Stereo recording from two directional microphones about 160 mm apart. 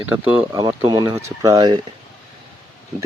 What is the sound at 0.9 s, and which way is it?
Speech, 25° right (ahead or behind).